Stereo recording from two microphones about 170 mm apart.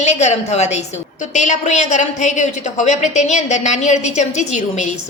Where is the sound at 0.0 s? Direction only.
40° left (ahead or behind).